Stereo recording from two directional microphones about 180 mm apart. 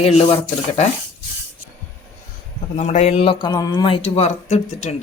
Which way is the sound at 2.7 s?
35° left (ahead or behind).